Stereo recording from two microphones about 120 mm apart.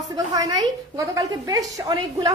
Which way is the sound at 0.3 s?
30° right (ahead or behind).